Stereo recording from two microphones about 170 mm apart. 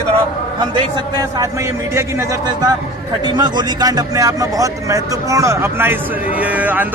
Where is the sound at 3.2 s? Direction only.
25° right (ahead or behind).